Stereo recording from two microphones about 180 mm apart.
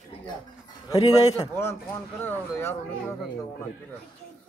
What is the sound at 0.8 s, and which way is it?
A man's voice, 20° left (ahead or behind).